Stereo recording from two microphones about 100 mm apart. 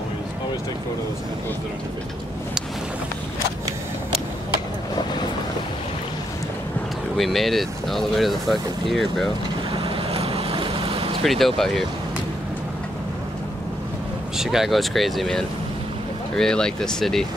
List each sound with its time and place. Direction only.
7.2 s speech: centre (ahead or behind)
9.7 s boat: 65° right (ahead or behind)
11.2 s speech: centre (ahead or behind)
14.3 s speech: 5° right (ahead or behind)